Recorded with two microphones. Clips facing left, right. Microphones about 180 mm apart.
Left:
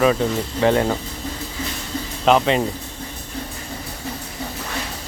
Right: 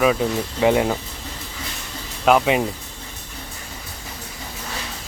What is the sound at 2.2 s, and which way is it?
Speech, 10° right (ahead or behind).